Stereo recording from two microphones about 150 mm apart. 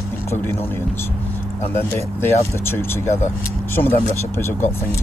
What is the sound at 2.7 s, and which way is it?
Speech, 15° left (ahead or behind).